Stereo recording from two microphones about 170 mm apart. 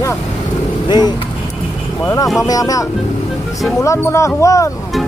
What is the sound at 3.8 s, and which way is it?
Speech, 15° left (ahead or behind).